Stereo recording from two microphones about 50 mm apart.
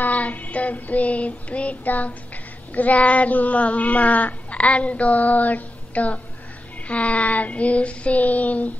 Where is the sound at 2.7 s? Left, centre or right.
Left.